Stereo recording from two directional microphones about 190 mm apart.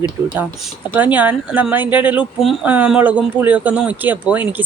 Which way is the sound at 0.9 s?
10° right (ahead or behind).